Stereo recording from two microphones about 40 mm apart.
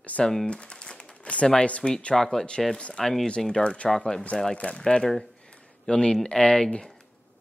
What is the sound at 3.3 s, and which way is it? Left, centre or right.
Speech, left.